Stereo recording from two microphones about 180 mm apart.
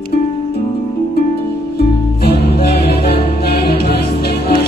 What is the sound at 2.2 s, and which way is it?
Music, 60° left (ahead or behind).